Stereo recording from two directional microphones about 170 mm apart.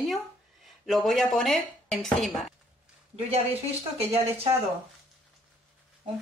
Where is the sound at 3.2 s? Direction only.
35° right (ahead or behind).